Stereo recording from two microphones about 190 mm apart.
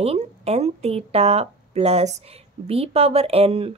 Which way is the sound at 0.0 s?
35° right (ahead or behind).